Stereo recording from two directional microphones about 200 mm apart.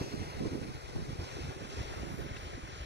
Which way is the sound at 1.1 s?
60° right (ahead or behind).